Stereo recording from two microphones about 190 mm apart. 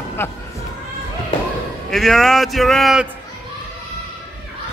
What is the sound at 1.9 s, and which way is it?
A man's voice, centre (ahead or behind).